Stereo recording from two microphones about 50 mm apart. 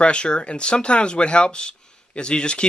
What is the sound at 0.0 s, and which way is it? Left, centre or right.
Speech, left.